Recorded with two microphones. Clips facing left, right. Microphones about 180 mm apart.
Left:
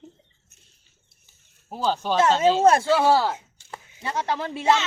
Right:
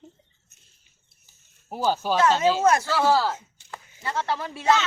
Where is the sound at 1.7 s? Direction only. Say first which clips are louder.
Even; 10° right (ahead or behind).